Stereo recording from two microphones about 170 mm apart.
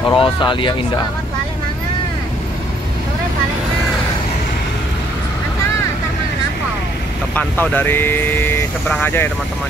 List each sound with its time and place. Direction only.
0.1 s speech: 30° left (ahead or behind)
7.3 s speech: 10° left (ahead or behind)